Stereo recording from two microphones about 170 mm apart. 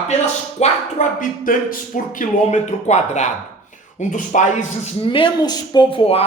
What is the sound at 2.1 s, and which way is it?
A man's voice, 45° left (ahead or behind).